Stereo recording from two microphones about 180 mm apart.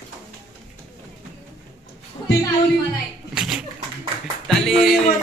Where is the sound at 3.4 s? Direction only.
5° right (ahead or behind).